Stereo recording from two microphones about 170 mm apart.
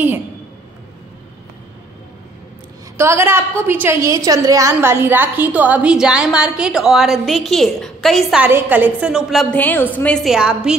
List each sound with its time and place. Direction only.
3.0 s a woman's voice: 15° right (ahead or behind)
8.5 s a woman's voice: 10° right (ahead or behind)